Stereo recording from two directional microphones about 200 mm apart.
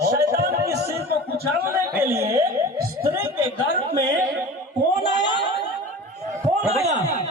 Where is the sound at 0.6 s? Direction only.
15° right (ahead or behind).